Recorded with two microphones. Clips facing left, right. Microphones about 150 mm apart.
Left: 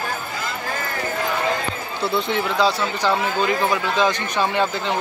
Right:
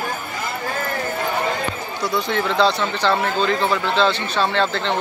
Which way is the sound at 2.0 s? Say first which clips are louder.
Left 1 dB; 25° left (ahead or behind).